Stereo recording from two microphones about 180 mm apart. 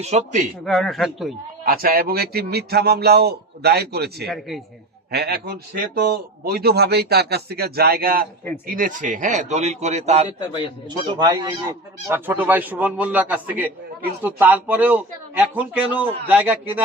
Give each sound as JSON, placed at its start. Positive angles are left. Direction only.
{"t": 0.0, "sound": "speech", "side_deg": -40}
{"t": 0.6, "sound": "speech", "side_deg": 5}
{"t": 1.6, "sound": "a man's voice", "side_deg": -55}
{"t": 4.3, "sound": "speech", "side_deg": 0}
{"t": 5.1, "sound": "a man's voice", "side_deg": -60}
{"t": 10.8, "sound": "speech", "side_deg": -25}